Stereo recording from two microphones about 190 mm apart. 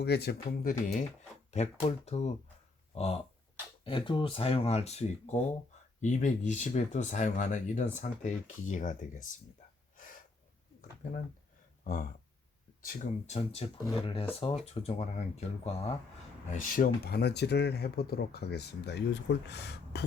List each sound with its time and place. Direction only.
0.0 s speech: 60° left (ahead or behind)
1.5 s speech: 35° left (ahead or behind)
10.0 s gasp: 45° left (ahead or behind)
12.8 s speech: 40° left (ahead or behind)
16.5 s speech: 45° left (ahead or behind)